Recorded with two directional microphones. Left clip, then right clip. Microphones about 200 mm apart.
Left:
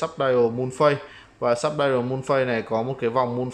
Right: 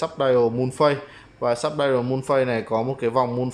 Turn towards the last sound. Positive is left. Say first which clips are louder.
# right 1 dB
turn(degrees=0)  # may be behind; listen again after turning